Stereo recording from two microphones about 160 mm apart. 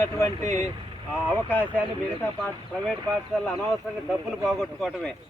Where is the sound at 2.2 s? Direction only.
10° left (ahead or behind).